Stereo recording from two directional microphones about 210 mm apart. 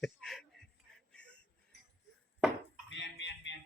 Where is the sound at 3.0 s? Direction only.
60° left (ahead or behind).